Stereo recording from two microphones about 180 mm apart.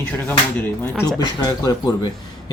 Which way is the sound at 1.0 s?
20° left (ahead or behind).